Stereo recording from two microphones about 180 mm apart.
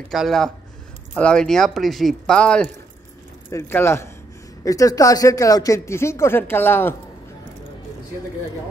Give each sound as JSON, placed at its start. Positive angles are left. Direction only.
{"t": 0.1, "sound": "speech", "side_deg": 0}